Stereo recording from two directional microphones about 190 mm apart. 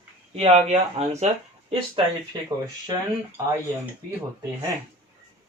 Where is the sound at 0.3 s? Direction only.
35° right (ahead or behind).